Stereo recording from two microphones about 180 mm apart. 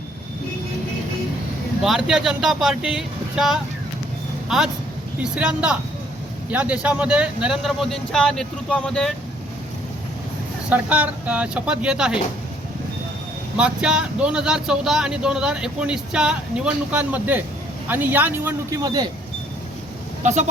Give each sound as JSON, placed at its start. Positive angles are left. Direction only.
{"t": 1.8, "sound": "speech", "side_deg": -5}
{"t": 10.7, "sound": "speech", "side_deg": -10}
{"t": 13.6, "sound": "speech", "side_deg": -5}
{"t": 20.2, "sound": "speech", "side_deg": -40}